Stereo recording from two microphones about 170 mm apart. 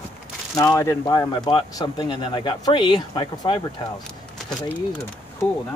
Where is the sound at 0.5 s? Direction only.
20° left (ahead or behind).